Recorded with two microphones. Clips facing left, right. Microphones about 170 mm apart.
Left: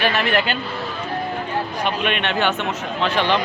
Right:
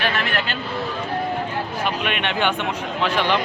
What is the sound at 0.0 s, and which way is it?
Speech, 5° left (ahead or behind).